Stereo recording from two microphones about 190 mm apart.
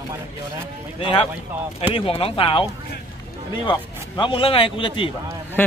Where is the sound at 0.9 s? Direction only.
30° left (ahead or behind).